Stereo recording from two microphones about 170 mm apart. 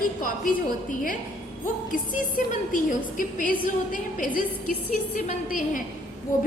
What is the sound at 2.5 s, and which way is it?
A woman's voice, 50° left (ahead or behind).